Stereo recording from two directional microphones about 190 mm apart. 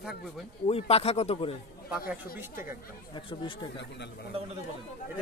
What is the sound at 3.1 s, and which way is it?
Speech, 25° left (ahead or behind).